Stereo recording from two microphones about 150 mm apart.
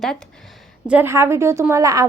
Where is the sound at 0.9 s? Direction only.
15° right (ahead or behind).